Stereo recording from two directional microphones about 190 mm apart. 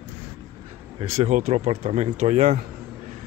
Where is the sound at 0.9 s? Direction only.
30° right (ahead or behind).